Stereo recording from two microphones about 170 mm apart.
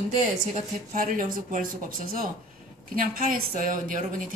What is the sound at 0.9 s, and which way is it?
A woman's voice, 55° right (ahead or behind).